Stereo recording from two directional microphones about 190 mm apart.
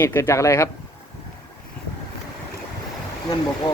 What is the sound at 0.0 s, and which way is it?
Speech, 15° left (ahead or behind).